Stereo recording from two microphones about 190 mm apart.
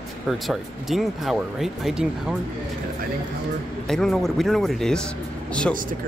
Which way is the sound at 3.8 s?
Centre (ahead or behind).